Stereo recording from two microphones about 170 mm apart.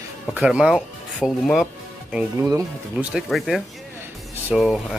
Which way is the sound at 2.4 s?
20° right (ahead or behind).